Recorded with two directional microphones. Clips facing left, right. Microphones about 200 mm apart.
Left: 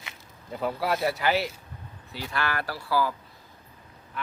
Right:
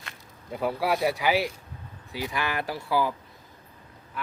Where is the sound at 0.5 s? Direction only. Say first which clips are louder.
Right 1 dB; 5° right (ahead or behind).